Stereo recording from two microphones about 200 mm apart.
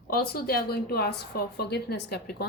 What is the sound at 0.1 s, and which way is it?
A woman's voice, 50° left (ahead or behind).